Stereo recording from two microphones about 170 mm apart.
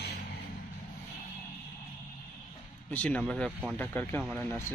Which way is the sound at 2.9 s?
10° left (ahead or behind).